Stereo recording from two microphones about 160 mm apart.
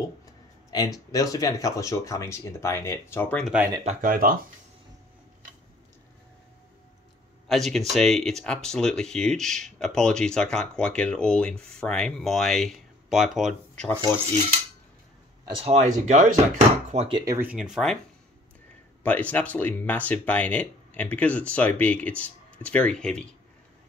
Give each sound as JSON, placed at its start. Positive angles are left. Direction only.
{"t": 0.7, "sound": "speech", "side_deg": 25}
{"t": 3.4, "sound": "speech", "side_deg": -10}
{"t": 3.8, "sound": "speech", "side_deg": -60}
{"t": 7.4, "sound": "speech", "side_deg": 0}
{"t": 13.8, "sound": "speech", "side_deg": 15}
{"t": 15.4, "sound": "speech", "side_deg": -35}
{"t": 17.2, "sound": "speech", "side_deg": -20}
{"t": 17.5, "sound": "speech", "side_deg": -5}
{"t": 19.0, "sound": "speech", "side_deg": 10}